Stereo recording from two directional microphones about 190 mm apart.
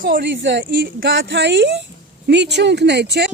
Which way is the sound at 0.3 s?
70° right (ahead or behind).